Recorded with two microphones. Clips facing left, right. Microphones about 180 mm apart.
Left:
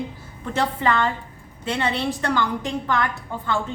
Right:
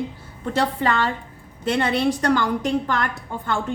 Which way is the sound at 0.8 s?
35° right (ahead or behind).